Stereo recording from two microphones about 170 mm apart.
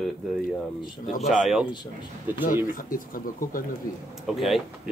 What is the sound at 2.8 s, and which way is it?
Speech, 55° left (ahead or behind).